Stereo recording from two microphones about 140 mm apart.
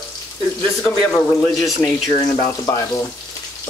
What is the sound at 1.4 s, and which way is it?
Speech, centre (ahead or behind).